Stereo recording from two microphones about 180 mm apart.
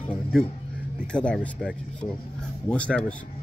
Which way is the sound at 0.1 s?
5° left (ahead or behind).